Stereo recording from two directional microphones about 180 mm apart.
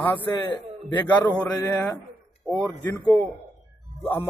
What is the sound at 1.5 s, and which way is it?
A man's voice, 15° left (ahead or behind).